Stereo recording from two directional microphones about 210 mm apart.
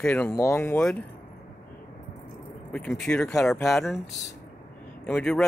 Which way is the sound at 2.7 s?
5° left (ahead or behind).